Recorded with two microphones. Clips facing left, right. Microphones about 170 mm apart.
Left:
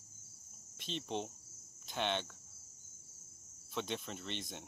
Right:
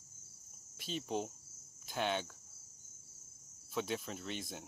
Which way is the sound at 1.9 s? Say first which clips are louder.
Right 1 dB; 5° right (ahead or behind).